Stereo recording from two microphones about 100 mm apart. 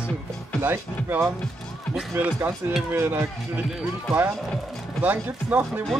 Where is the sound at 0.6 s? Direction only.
20° right (ahead or behind).